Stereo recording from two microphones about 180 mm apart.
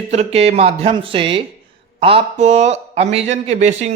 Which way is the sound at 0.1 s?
35° right (ahead or behind).